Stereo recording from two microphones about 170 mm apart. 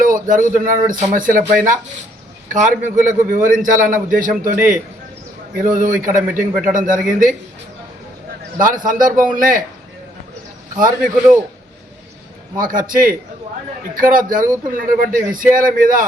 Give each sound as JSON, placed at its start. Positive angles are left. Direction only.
{"t": 0.0, "sound": "a sound", "side_deg": -50}
{"t": 0.6, "sound": "speech", "side_deg": -50}
{"t": 5.5, "sound": "speech", "side_deg": -50}
{"t": 8.5, "sound": "speech", "side_deg": -50}
{"t": 10.8, "sound": "speech", "side_deg": -50}
{"t": 12.5, "sound": "speech", "side_deg": -55}